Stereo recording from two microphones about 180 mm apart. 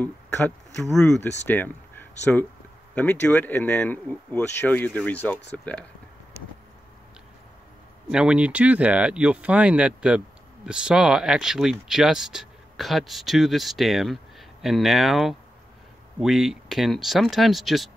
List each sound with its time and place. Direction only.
0.7 s speech: 5° left (ahead or behind)
8.1 s speech: 5° right (ahead or behind)